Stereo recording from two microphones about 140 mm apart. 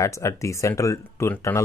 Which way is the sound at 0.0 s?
20° left (ahead or behind).